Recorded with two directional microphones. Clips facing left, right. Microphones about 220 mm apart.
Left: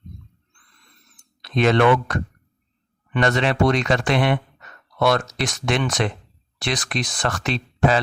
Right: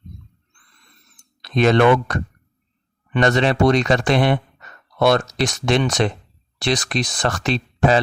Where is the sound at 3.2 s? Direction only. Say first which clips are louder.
Right 3 dB; 35° right (ahead or behind).